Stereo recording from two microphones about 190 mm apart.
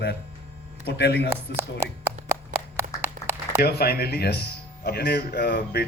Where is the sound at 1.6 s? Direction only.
15° right (ahead or behind).